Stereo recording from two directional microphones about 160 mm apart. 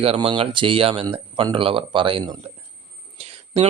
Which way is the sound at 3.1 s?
40° right (ahead or behind).